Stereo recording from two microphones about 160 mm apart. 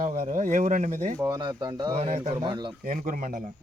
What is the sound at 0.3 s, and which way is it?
Speech, 50° right (ahead or behind).